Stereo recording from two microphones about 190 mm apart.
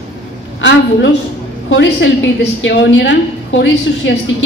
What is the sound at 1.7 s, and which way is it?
A woman's voice, 70° left (ahead or behind).